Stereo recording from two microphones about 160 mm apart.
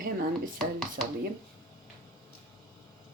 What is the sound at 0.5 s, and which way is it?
Speech, 5° left (ahead or behind).